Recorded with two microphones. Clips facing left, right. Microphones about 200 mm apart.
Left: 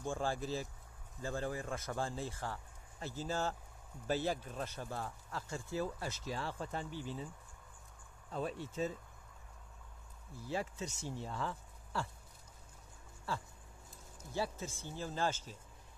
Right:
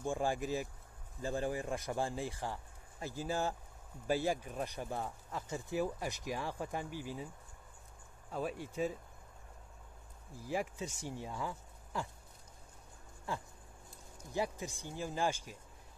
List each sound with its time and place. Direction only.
0.0 s speech: 15° right (ahead or behind)
8.3 s speech: 5° right (ahead or behind)
10.5 s speech: 15° right (ahead or behind)
13.3 s speech: 15° right (ahead or behind)